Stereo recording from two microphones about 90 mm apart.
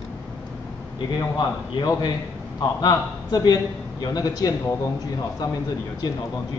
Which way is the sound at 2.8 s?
50° left (ahead or behind).